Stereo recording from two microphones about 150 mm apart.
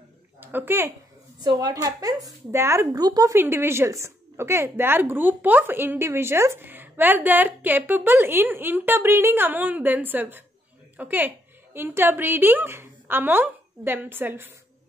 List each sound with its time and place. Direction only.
0.4 s speech: 15° right (ahead or behind)
1.4 s a woman's voice: 25° right (ahead or behind)